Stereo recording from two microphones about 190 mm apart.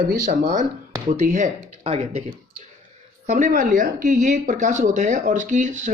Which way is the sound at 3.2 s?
40° right (ahead or behind).